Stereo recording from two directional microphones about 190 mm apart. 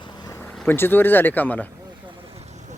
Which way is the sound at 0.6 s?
10° left (ahead or behind).